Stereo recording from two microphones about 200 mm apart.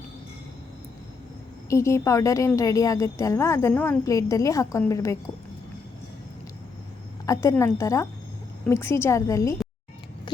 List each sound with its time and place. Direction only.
1.7 s a woman's voice: 15° left (ahead or behind)
7.3 s a woman's voice: 15° left (ahead or behind)
10.3 s a sound: 20° left (ahead or behind)